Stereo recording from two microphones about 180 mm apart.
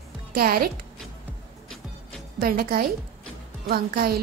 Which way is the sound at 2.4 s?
55° right (ahead or behind).